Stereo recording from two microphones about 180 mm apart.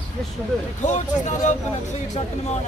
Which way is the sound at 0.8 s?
40° left (ahead or behind).